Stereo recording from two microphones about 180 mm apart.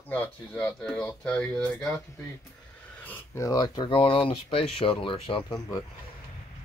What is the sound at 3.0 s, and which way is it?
Speech, 15° left (ahead or behind).